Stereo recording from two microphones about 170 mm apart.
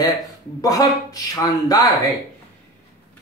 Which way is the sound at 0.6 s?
20° left (ahead or behind).